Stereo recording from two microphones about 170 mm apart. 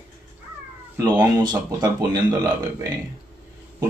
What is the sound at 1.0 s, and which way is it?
Speech, 25° right (ahead or behind).